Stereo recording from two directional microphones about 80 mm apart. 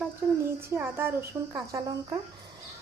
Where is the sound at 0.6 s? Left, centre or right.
Right.